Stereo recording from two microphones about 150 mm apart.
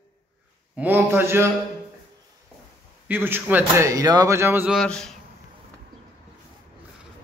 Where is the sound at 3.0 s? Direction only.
15° right (ahead or behind).